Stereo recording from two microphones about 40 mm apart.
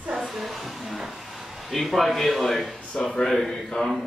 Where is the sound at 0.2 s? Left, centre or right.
Centre.